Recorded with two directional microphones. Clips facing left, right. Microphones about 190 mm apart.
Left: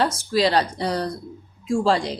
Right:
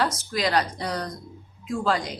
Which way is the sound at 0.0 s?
30° left (ahead or behind).